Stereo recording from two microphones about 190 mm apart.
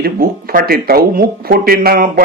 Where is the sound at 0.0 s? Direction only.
50° right (ahead or behind).